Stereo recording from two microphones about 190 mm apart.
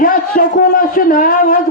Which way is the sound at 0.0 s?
45° left (ahead or behind).